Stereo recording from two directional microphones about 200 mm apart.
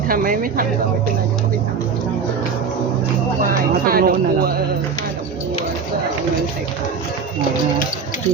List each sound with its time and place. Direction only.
0.1 s speech: 45° right (ahead or behind)
3.8 s speech: 45° right (ahead or behind)